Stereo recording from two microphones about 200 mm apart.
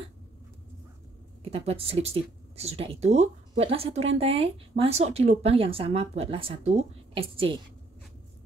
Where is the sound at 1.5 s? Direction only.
30° right (ahead or behind).